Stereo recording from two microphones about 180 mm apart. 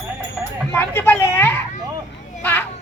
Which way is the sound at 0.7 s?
10° left (ahead or behind).